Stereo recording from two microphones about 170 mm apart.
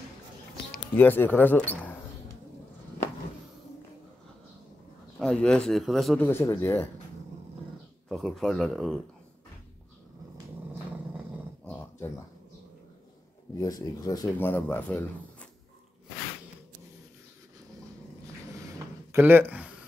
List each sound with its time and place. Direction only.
0.9 s speech: 10° left (ahead or behind)
1.8 s a sound: 10° left (ahead or behind)
5.2 s speech: 5° left (ahead or behind)
6.2 s speech: 10° left (ahead or behind)
8.1 s speech: centre (ahead or behind)
11.6 s a sound: 10° left (ahead or behind)
13.6 s speech: 20° left (ahead or behind)
19.1 s speech: 10° right (ahead or behind)